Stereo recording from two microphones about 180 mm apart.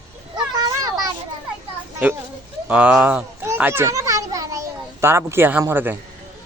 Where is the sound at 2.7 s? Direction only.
10° right (ahead or behind).